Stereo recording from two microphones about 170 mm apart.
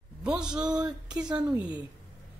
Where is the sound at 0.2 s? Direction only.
5° right (ahead or behind).